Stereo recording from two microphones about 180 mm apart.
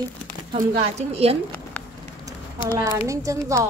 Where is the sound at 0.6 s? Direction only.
40° right (ahead or behind).